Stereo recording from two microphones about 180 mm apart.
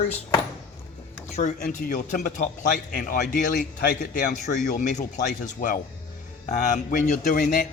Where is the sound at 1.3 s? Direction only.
45° left (ahead or behind).